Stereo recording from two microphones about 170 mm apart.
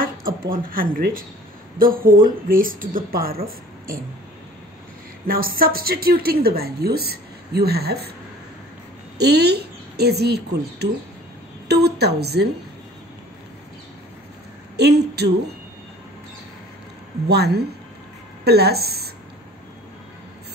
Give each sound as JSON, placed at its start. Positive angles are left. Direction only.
{"t": 0.0, "sound": "a woman's voice", "side_deg": -55}
{"t": 5.2, "sound": "a woman's voice", "side_deg": -60}
{"t": 9.2, "sound": "a woman's voice", "side_deg": -75}
{"t": 14.8, "sound": "a woman's voice", "side_deg": -75}
{"t": 17.3, "sound": "a woman's voice", "side_deg": -70}